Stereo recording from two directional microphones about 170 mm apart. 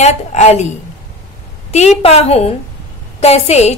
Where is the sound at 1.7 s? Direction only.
40° left (ahead or behind).